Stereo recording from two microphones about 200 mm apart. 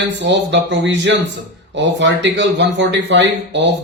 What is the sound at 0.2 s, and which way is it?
Speech, 65° right (ahead or behind).